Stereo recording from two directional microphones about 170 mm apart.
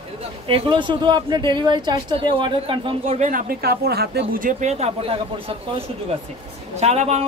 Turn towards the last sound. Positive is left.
turn(degrees=-40)  # may be behind; listen again after turning